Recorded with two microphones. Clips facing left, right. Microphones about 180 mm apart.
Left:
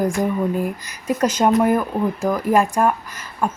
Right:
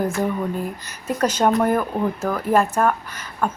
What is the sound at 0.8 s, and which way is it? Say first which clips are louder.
Speech: right 1 dB; 10° left (ahead or behind).